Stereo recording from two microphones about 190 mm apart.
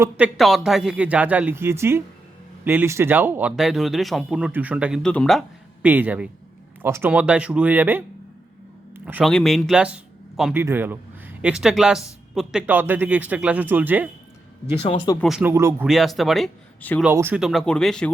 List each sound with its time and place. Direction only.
0.3 s speech: centre (ahead or behind)
5.8 s speech: 10° right (ahead or behind)
9.2 s speech: centre (ahead or behind)
14.8 s speech: 30° left (ahead or behind)
15.2 s speech: 5° right (ahead or behind)
15.9 s speech: centre (ahead or behind)
17.0 s speech: 10° right (ahead or behind)